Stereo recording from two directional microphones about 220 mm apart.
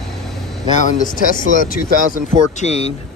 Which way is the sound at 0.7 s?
35° left (ahead or behind).